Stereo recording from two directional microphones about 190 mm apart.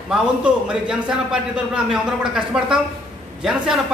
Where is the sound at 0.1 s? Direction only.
5° right (ahead or behind).